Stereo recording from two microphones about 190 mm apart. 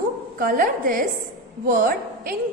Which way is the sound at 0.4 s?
45° right (ahead or behind).